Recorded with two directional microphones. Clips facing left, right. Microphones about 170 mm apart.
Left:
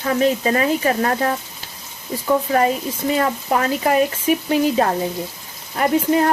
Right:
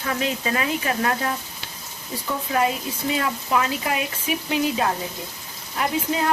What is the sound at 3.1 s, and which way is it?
Speech, 45° left (ahead or behind).